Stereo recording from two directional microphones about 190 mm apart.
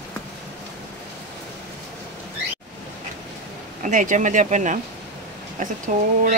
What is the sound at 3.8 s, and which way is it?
Speech, 40° right (ahead or behind).